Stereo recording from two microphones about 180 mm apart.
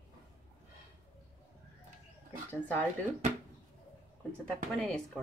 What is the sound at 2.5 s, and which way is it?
Speech, 10° left (ahead or behind).